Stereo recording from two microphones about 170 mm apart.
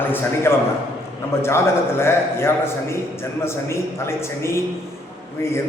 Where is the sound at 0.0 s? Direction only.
10° left (ahead or behind).